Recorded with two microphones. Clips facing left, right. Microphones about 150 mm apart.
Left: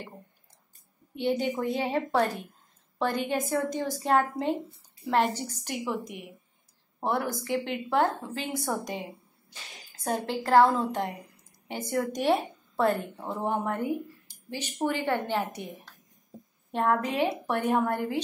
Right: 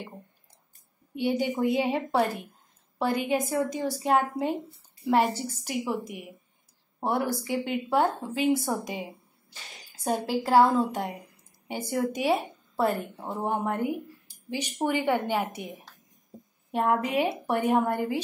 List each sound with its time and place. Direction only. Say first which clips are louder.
1.1 s a woman's voice: right 1 dB; 10° right (ahead or behind)
7.0 s a woman's voice: right 2 dB; 10° right (ahead or behind)
10.0 s a woman's voice: right 2 dB; 10° right (ahead or behind)
13.3 s speech: even; 20° right (ahead or behind)
13.7 s a woman's voice: right 1 dB; 10° right (ahead or behind)
16.7 s a woman's voice: right 1 dB; 10° right (ahead or behind)